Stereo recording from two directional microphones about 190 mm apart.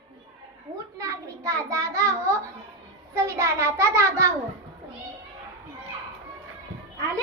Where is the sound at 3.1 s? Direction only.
15° right (ahead or behind).